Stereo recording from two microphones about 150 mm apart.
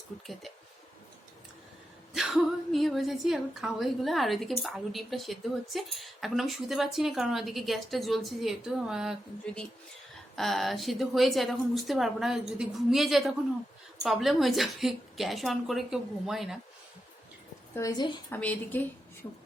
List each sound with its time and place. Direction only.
2.1 s a woman's voice: centre (ahead or behind)
10.3 s a woman's voice: centre (ahead or behind)
17.7 s a woman's voice: 25° left (ahead or behind)
18.3 s a woman's voice: 10° left (ahead or behind)